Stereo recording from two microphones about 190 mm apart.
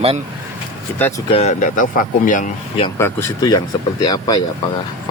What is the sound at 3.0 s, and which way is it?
Speech, 15° left (ahead or behind).